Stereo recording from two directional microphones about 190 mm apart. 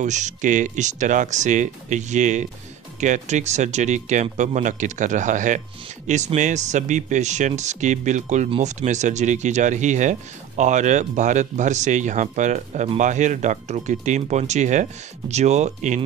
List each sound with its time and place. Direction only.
0.0 s speech: 40° right (ahead or behind)